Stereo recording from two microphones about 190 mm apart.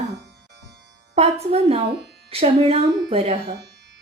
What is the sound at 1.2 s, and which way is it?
Speech, 35° right (ahead or behind).